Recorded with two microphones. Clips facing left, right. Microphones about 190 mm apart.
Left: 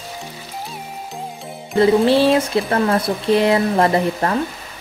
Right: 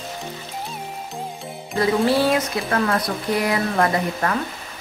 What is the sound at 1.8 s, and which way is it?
Speech, 25° left (ahead or behind).